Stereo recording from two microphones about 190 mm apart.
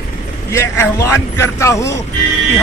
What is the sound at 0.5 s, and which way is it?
A man's voice, 15° left (ahead or behind).